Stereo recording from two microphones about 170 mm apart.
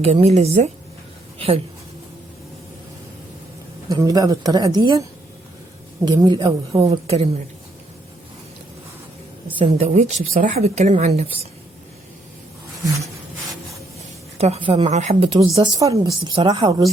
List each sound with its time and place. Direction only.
0.0 s speech: 35° right (ahead or behind)
3.8 s speech: 20° right (ahead or behind)
6.1 s speech: 25° right (ahead or behind)
6.8 s speech: 35° right (ahead or behind)
9.6 s speech: 35° right (ahead or behind)
14.3 s speech: 40° right (ahead or behind)
15.8 s speech: 25° right (ahead or behind)